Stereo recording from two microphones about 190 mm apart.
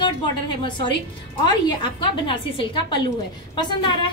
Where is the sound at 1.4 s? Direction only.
20° left (ahead or behind).